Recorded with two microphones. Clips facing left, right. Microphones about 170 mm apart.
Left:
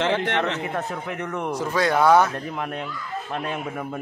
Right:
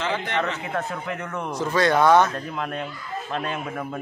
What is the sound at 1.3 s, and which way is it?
Speech, 10° left (ahead or behind).